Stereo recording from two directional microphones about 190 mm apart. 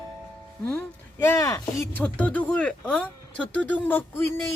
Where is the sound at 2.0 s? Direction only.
5° left (ahead or behind).